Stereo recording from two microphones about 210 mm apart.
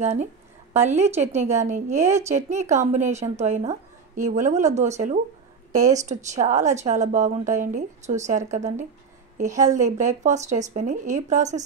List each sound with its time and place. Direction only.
0.0 s a woman's voice: 30° right (ahead or behind)